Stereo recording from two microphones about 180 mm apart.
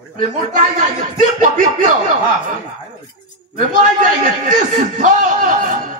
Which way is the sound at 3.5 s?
45° right (ahead or behind).